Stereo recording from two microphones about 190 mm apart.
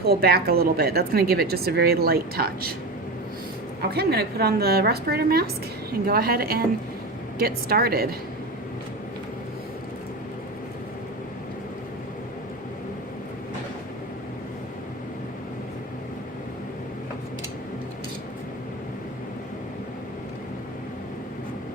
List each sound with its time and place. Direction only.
0.1 s speech: 55° right (ahead or behind)
3.8 s a woman's voice: 55° right (ahead or behind)